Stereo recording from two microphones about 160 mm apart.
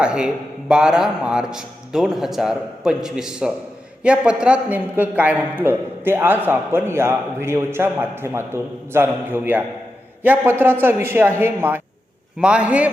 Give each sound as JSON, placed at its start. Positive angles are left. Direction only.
{"t": 0.0, "sound": "a man's voice", "side_deg": -5}